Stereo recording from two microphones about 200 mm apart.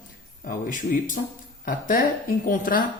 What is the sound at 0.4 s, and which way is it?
Speech, 40° left (ahead or behind).